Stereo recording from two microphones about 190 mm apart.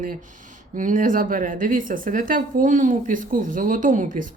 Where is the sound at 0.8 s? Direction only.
45° right (ahead or behind).